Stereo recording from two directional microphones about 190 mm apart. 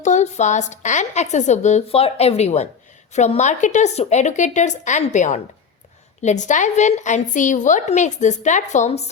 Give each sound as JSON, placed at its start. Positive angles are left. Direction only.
{"t": 0.0, "sound": "a woman's voice", "side_deg": 40}